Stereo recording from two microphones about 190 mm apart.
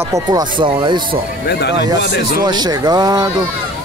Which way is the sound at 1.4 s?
65° left (ahead or behind).